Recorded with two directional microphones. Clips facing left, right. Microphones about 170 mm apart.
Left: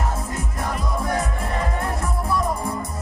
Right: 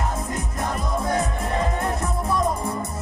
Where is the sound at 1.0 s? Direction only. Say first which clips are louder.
Right 1 dB; 25° right (ahead or behind).